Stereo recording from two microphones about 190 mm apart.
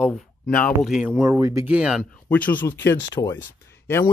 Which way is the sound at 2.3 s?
10° left (ahead or behind).